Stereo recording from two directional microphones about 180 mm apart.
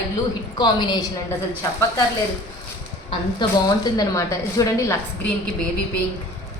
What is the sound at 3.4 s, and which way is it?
A woman's voice, 25° left (ahead or behind).